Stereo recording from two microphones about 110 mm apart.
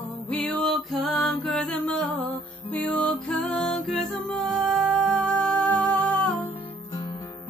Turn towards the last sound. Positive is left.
turn(degrees=15)  # may be behind; listen again after turning